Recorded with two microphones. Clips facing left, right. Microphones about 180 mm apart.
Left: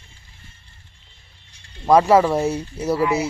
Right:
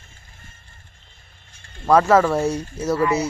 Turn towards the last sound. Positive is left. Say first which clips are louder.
# even
turn(degrees=15)  # may be behind; listen again after turning